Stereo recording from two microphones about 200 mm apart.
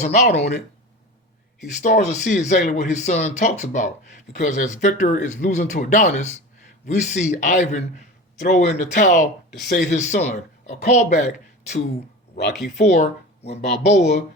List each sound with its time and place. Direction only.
0.0 s speech: 35° left (ahead or behind)
1.8 s speech: 40° left (ahead or behind)
12.8 s speech: 35° left (ahead or behind)
13.7 s speech: 55° left (ahead or behind)